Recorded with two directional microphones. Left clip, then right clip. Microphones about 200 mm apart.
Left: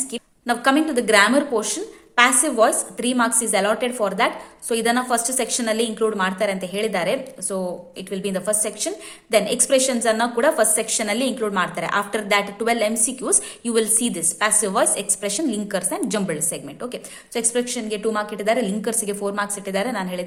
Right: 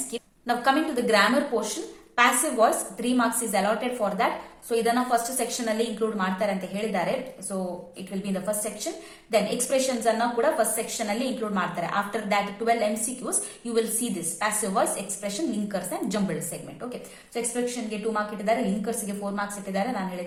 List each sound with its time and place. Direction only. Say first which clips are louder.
0.1 s a woman's voice: left 3 dB; 35° left (ahead or behind)